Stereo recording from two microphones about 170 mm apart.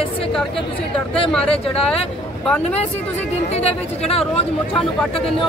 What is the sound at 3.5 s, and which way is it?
Speech, 35° left (ahead or behind).